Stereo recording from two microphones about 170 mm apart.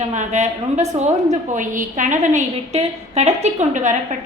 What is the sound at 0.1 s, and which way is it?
A woman's voice, 40° right (ahead or behind).